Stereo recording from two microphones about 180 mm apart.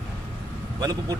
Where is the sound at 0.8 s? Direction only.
20° right (ahead or behind).